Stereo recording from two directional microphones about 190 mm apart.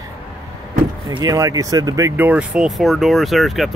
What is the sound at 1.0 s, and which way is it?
Speech, 20° right (ahead or behind).